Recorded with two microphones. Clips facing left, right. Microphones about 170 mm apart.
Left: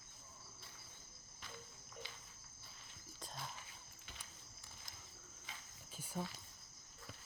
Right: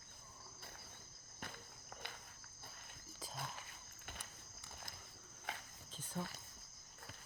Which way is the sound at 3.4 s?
55° right (ahead or behind).